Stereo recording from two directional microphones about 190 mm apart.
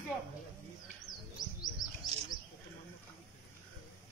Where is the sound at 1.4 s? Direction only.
20° left (ahead or behind).